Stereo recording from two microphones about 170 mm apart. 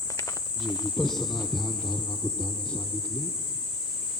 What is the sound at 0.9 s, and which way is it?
Cricket, centre (ahead or behind).